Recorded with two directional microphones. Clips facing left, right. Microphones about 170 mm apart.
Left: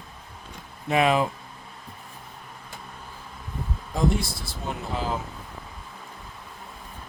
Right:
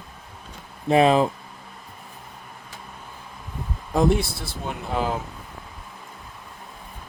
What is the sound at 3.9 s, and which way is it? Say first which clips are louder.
Speech: right 5 dB; 65° right (ahead or behind).